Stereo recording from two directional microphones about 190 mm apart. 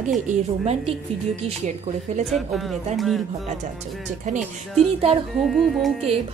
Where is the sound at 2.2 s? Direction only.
Centre (ahead or behind).